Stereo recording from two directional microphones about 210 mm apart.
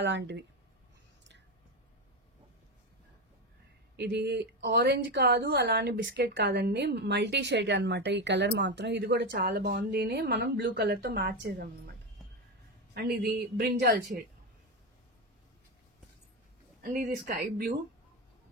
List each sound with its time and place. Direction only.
0.0 s speech: 55° right (ahead or behind)
3.9 s a woman's voice: 50° right (ahead or behind)
12.9 s a woman's voice: 50° right (ahead or behind)
16.8 s a woman's voice: 40° right (ahead or behind)